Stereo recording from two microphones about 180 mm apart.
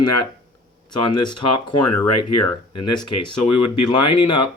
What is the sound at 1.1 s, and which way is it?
Speech, 25° left (ahead or behind).